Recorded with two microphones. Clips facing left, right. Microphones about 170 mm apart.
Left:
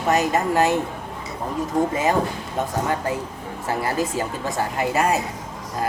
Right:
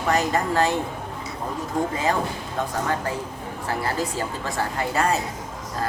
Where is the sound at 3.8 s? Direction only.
20° left (ahead or behind).